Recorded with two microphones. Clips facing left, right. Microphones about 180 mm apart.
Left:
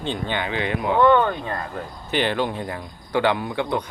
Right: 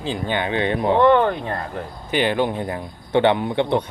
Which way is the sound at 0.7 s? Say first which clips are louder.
Right 1 dB; 35° right (ahead or behind).